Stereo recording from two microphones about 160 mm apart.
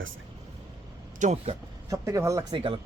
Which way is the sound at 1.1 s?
45° right (ahead or behind).